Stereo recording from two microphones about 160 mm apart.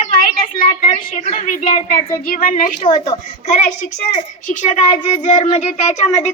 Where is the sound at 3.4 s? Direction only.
45° left (ahead or behind).